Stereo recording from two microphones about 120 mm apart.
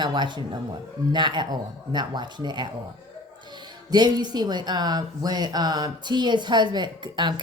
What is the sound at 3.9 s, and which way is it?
Speech, 35° right (ahead or behind).